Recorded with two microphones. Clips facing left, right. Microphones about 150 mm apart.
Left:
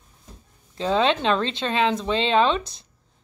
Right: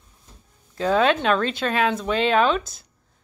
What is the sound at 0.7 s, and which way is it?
Speech, 25° left (ahead or behind).